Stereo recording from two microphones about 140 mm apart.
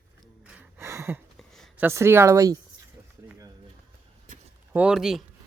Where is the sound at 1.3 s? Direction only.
5° left (ahead or behind).